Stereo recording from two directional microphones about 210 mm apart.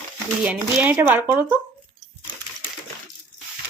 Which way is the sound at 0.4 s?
5° right (ahead or behind).